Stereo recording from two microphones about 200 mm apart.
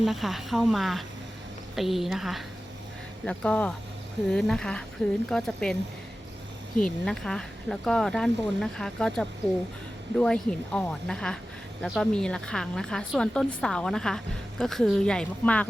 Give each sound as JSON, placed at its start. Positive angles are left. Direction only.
{"t": 0.0, "sound": "speech", "side_deg": 0}
{"t": 6.7, "sound": "speech", "side_deg": 5}